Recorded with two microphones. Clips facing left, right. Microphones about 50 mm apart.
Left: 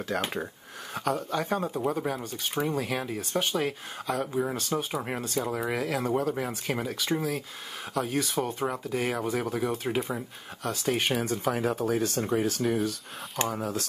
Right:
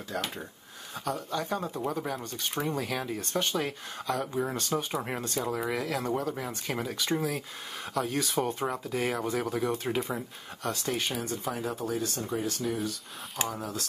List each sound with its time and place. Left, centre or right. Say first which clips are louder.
0.1 s speech: left 3 dB; left
1.1 s speech: left 2 dB; left
1.6 s speech: left 4 dB; centre
11.1 s speech: left 5 dB; left
11.5 s speech: left 5 dB; left
12.4 s speech: left 4 dB; left
13.5 s speech: left 4 dB; left